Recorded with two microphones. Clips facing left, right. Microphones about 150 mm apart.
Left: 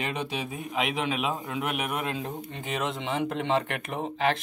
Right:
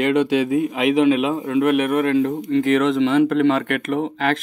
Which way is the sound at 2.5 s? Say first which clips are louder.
Right 15 dB; 90° right.